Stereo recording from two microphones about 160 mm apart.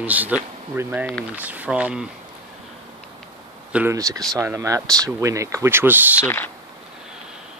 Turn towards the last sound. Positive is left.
turn(degrees=15)  # may be behind; listen again after turning